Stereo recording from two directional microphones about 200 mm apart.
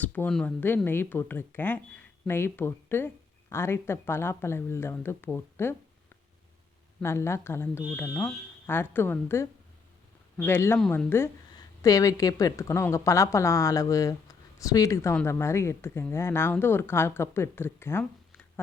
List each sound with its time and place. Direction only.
0.0 s a woman's voice: 10° left (ahead or behind)
7.0 s a woman's voice: 15° left (ahead or behind)